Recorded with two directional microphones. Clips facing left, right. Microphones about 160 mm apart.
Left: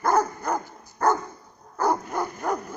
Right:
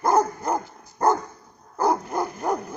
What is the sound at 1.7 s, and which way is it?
Dog, 20° right (ahead or behind).